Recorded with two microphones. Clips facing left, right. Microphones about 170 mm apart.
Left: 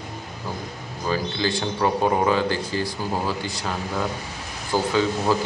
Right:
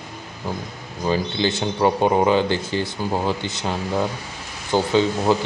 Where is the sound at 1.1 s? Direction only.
25° right (ahead or behind).